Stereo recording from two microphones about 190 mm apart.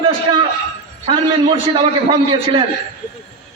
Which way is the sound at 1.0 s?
25° right (ahead or behind).